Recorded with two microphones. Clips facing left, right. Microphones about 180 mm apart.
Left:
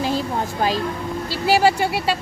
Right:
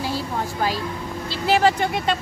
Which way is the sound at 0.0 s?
20° left (ahead or behind).